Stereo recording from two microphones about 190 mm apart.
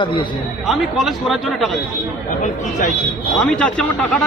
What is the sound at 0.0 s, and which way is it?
Speech, 25° left (ahead or behind).